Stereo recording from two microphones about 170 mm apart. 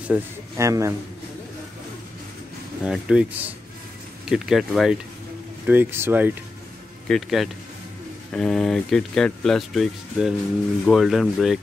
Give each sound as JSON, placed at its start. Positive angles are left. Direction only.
{"t": 0.1, "sound": "a man's voice", "side_deg": -15}
{"t": 2.8, "sound": "speech", "side_deg": -5}
{"t": 5.7, "sound": "a man's voice", "side_deg": -10}
{"t": 7.1, "sound": "speech", "side_deg": 0}